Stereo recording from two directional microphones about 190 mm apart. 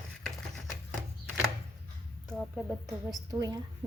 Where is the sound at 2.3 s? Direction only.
Centre (ahead or behind).